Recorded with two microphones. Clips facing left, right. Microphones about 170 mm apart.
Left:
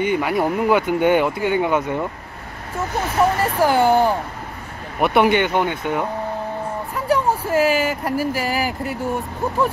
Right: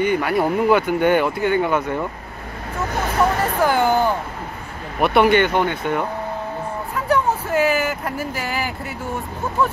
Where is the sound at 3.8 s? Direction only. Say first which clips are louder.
Left 4 dB; 30° left (ahead or behind).